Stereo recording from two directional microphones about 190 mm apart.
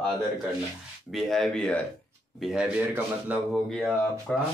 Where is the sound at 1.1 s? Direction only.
Centre (ahead or behind).